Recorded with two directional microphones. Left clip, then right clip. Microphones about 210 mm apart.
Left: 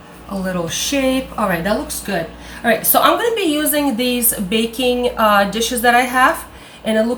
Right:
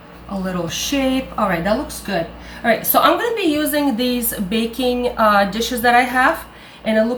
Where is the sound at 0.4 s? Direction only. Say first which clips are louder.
Left 2 dB; 5° left (ahead or behind).